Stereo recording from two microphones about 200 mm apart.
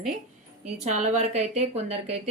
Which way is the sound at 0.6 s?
35° right (ahead or behind).